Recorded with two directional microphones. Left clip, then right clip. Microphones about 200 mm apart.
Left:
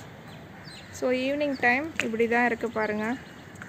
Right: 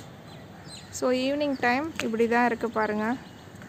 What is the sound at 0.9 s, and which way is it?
Speech, 15° right (ahead or behind).